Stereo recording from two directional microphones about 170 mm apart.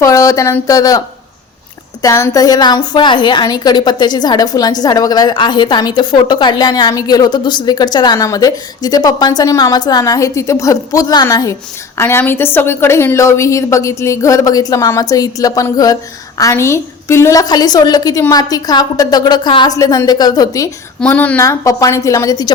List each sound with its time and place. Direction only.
0.0 s a woman's voice: 20° left (ahead or behind)
21.0 s a woman's voice: 10° left (ahead or behind)